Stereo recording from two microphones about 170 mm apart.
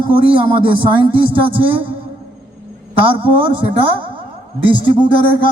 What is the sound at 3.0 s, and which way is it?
Speech, 30° right (ahead or behind).